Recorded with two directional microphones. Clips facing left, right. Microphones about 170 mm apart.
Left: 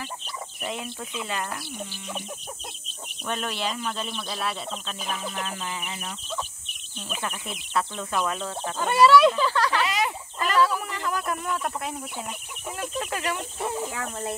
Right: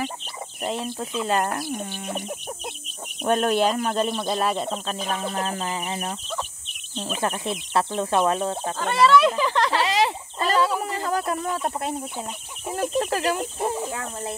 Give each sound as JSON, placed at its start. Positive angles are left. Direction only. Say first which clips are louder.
{"t": 0.6, "sound": "speech", "louder": "right 6 dB", "side_deg": -35}
{"t": 1.7, "sound": "bird", "louder": "right 6 dB", "side_deg": -60}
{"t": 3.3, "sound": "speech", "louder": "right 10 dB", "side_deg": -50}
{"t": 8.7, "sound": "speech", "louder": "left 1 dB", "side_deg": 5}
{"t": 9.5, "sound": "a sound", "louder": "right 2 dB", "side_deg": -25}